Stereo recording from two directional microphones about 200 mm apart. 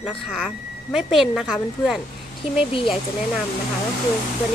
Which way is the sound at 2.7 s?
25° left (ahead or behind).